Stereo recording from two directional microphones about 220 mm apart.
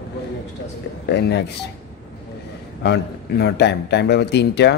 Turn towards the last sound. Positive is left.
turn(degrees=50)  # may be behind; listen again after turning